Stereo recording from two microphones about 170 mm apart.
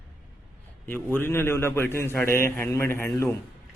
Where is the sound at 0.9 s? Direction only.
15° left (ahead or behind).